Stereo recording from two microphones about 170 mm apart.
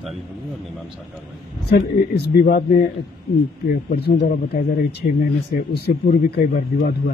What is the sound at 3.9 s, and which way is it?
Speech, 70° left (ahead or behind).